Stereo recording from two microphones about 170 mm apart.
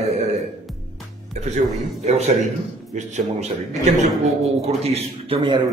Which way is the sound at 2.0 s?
40° right (ahead or behind).